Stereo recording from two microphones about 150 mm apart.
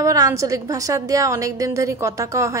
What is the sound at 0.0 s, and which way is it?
A woman's voice, 20° right (ahead or behind).